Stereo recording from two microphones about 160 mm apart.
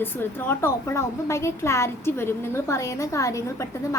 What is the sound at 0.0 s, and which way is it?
A woman's voice, 15° left (ahead or behind).